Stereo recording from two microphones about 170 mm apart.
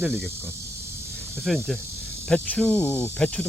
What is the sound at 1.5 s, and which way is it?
Speech, centre (ahead or behind).